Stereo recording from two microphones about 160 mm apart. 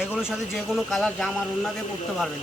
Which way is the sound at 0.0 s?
5° right (ahead or behind).